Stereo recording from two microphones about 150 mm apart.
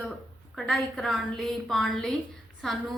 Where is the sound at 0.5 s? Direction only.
Centre (ahead or behind).